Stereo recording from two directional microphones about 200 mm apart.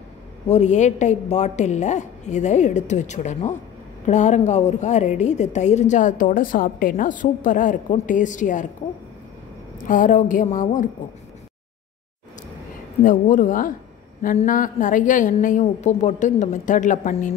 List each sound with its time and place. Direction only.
0.5 s a woman's voice: 35° left (ahead or behind)
9.8 s a woman's voice: 40° left (ahead or behind)
13.0 s a woman's voice: 40° left (ahead or behind)